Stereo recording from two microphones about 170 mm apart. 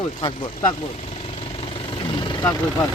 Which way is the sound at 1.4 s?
30° left (ahead or behind).